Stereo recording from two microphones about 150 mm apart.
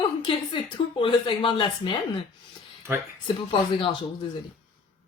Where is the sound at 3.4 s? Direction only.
35° left (ahead or behind).